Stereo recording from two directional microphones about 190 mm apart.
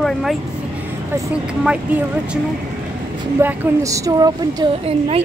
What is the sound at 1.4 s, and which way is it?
Speech, 5° right (ahead or behind).